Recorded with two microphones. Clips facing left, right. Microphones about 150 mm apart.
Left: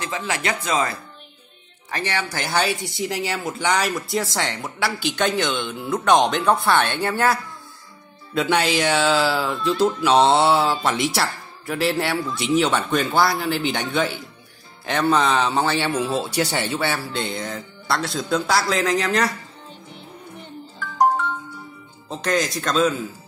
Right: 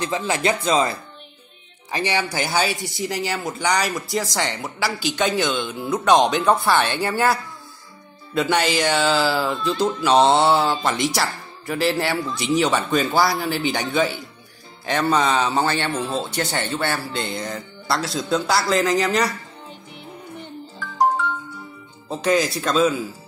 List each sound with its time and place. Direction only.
0.0 s speech: 30° right (ahead or behind)
1.9 s speech: 15° right (ahead or behind)
2.2 s speech: centre (ahead or behind)
8.4 s speech: centre (ahead or behind)
22.1 s speech: 5° right (ahead or behind)